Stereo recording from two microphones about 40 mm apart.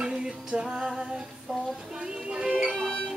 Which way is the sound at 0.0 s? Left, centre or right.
Centre.